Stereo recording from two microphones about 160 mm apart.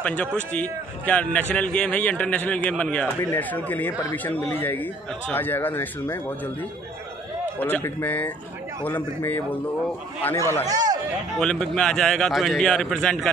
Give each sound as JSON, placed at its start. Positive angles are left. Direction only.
{"t": 0.0, "sound": "a man's voice", "side_deg": 10}
{"t": 7.6, "sound": "a man's voice", "side_deg": 10}
{"t": 10.7, "sound": "speech", "side_deg": -25}
{"t": 11.3, "sound": "a man's voice", "side_deg": 5}